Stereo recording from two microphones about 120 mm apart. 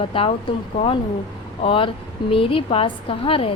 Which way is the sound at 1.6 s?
50° left (ahead or behind).